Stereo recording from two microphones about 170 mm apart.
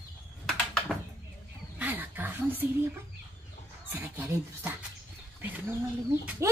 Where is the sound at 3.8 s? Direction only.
10° right (ahead or behind).